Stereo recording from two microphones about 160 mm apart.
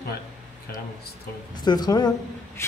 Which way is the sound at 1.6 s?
25° left (ahead or behind).